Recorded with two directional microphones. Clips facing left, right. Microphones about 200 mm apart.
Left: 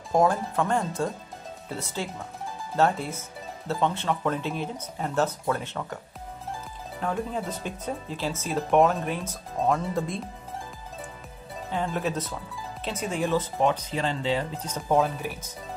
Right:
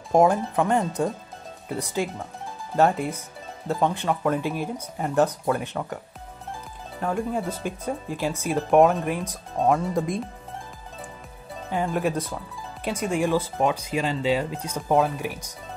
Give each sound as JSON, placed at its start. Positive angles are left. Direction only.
{"t": 0.1, "sound": "speech", "side_deg": -20}
{"t": 7.0, "sound": "speech", "side_deg": -10}
{"t": 8.5, "sound": "speech", "side_deg": 0}
{"t": 11.7, "sound": "speech", "side_deg": -10}